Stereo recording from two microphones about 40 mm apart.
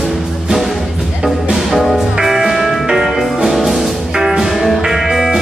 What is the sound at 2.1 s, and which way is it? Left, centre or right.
Music, centre.